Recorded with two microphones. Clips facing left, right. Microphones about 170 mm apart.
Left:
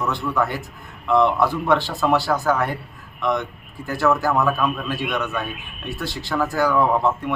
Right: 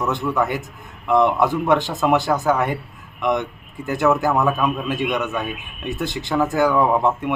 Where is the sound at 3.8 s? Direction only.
20° right (ahead or behind).